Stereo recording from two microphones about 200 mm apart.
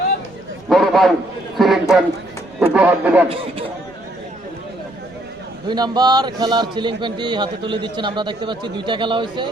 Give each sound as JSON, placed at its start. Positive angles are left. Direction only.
{"t": 0.7, "sound": "a sound", "side_deg": 0}
{"t": 1.5, "sound": "a man's voice", "side_deg": 0}
{"t": 5.6, "sound": "a man's voice", "side_deg": -20}